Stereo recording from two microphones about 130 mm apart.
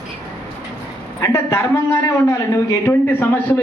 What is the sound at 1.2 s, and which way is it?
Speech, 20° left (ahead or behind).